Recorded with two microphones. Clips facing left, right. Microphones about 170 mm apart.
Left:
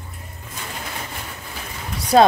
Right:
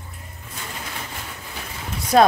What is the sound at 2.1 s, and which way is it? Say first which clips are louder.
Speech: left 2 dB; 25° left (ahead or behind).